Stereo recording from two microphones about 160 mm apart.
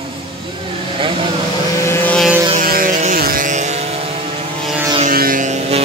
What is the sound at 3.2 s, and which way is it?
Vehicle, 60° right (ahead or behind).